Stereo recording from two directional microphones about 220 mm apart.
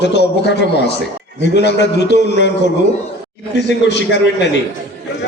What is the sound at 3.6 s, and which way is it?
Speech, 50° left (ahead or behind).